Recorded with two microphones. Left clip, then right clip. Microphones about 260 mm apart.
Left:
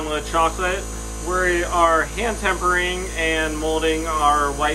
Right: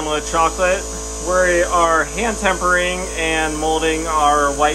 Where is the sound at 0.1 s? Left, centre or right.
Centre.